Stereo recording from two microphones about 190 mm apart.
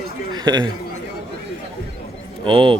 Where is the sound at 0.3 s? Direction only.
20° right (ahead or behind).